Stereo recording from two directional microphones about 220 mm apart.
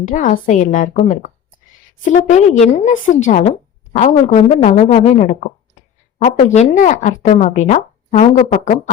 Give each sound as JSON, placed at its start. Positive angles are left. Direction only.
{"t": 0.0, "sound": "speech", "side_deg": 35}